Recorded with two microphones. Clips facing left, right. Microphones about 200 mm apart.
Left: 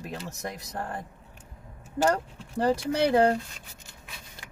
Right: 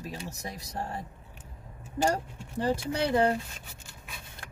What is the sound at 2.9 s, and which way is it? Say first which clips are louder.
Speech: left 4 dB; 65° left (ahead or behind).